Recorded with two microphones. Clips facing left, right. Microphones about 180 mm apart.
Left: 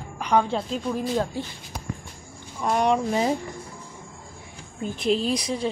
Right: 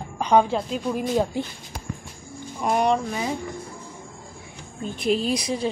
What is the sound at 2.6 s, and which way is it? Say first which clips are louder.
Speech: right 1 dB; 10° right (ahead or behind).